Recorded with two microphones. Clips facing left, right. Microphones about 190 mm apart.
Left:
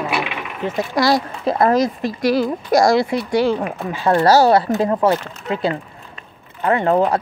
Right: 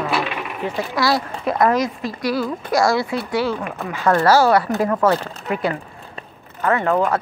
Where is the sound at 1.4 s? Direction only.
30° left (ahead or behind).